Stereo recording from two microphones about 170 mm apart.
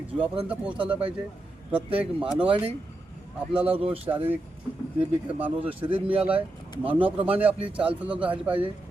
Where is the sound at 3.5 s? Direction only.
5° right (ahead or behind).